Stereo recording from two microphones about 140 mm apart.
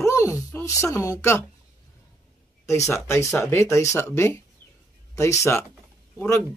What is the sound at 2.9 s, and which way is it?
A child's voice, 20° left (ahead or behind).